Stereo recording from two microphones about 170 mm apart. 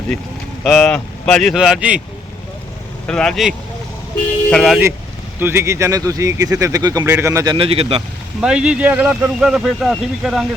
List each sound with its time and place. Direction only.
0.6 s speech: 5° left (ahead or behind)
3.1 s speech: 5° left (ahead or behind)
4.5 s speech: centre (ahead or behind)
5.4 s speech: 15° right (ahead or behind)
7.5 s speech: 35° right (ahead or behind)
8.4 s speech: 5° right (ahead or behind)